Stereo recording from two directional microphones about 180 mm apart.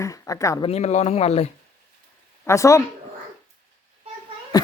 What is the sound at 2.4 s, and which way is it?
Speech, 15° left (ahead or behind).